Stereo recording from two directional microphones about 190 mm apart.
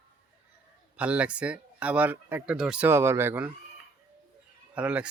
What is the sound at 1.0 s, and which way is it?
Speech, 5° right (ahead or behind).